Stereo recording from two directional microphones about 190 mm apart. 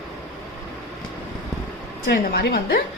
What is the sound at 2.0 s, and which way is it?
Speech, 60° left (ahead or behind).